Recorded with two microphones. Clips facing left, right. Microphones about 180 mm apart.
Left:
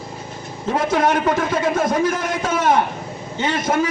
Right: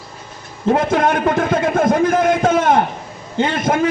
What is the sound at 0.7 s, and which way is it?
A man's voice, 55° right (ahead or behind).